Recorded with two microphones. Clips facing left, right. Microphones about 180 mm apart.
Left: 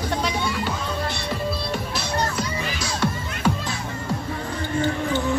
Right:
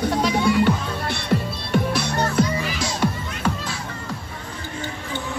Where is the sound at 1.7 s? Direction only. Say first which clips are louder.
Right 5 dB; 60° right (ahead or behind).